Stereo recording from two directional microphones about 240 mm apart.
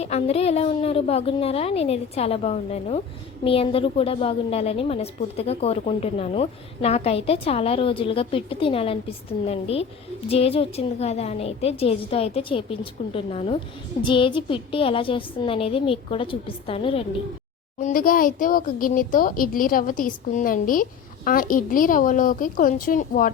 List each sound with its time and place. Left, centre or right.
0.0 s a woman's voice: left
17.7 s speech: left